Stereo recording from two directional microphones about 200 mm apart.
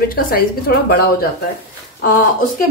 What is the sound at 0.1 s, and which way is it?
Speech, 45° left (ahead or behind).